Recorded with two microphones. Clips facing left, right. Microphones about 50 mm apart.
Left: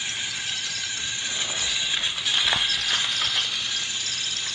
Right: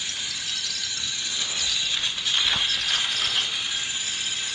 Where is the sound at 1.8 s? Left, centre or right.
Centre.